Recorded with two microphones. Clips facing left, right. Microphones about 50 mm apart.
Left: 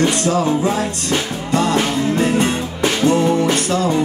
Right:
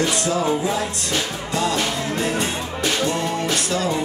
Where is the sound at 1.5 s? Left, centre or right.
Left.